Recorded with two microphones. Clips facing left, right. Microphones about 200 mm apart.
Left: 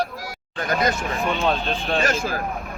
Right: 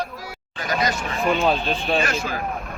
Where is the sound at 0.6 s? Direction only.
55° left (ahead or behind).